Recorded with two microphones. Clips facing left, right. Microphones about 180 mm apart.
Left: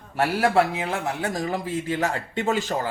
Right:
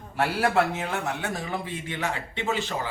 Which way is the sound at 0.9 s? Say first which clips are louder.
Left 3 dB; 30° left (ahead or behind).